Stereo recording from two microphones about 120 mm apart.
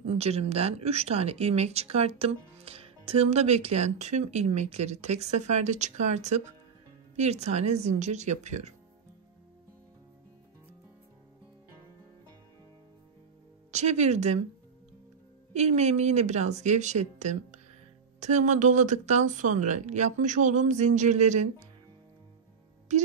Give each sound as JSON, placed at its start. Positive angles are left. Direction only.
{"t": 0.0, "sound": "speech", "side_deg": -60}
{"t": 13.7, "sound": "speech", "side_deg": -75}
{"t": 15.5, "sound": "speech", "side_deg": -70}
{"t": 22.9, "sound": "speech", "side_deg": -80}